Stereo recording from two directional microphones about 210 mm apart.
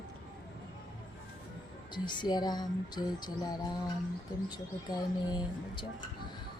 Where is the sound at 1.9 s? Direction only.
20° left (ahead or behind).